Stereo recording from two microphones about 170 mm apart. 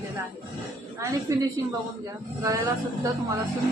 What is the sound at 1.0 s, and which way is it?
Speech, 20° right (ahead or behind).